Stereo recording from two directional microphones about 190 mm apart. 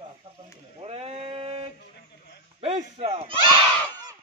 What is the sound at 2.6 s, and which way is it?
Speech, 30° right (ahead or behind).